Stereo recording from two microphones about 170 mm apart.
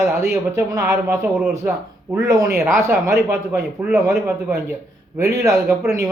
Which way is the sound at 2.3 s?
20° right (ahead or behind).